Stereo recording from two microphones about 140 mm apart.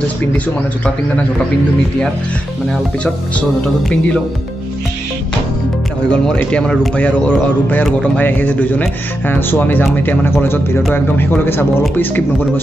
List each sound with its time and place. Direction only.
2.7 s a man's voice: 10° left (ahead or behind)
6.0 s a man's voice: 5° left (ahead or behind)